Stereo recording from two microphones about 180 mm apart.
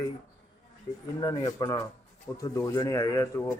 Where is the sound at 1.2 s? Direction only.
20° left (ahead or behind).